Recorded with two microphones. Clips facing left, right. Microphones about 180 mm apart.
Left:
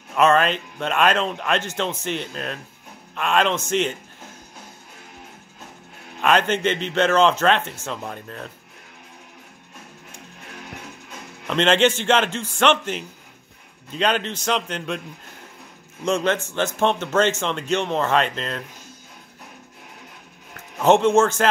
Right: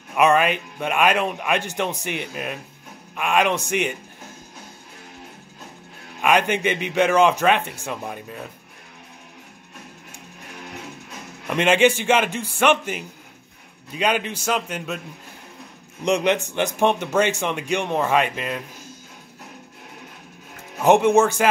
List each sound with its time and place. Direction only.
0.1 s speech: 10° right (ahead or behind)
6.2 s speech: 10° right (ahead or behind)
11.4 s speech: 10° right (ahead or behind)
16.0 s speech: 15° right (ahead or behind)
20.8 s speech: 10° right (ahead or behind)